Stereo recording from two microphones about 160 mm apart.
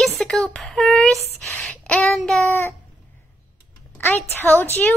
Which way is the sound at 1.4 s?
Centre (ahead or behind).